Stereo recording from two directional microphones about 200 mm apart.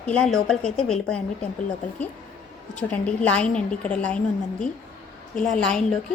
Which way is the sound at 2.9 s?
5° left (ahead or behind).